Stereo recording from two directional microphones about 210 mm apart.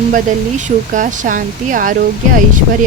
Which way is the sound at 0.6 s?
40° right (ahead or behind).